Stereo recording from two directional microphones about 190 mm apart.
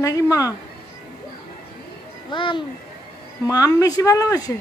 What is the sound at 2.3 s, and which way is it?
A woman's voice, 25° left (ahead or behind).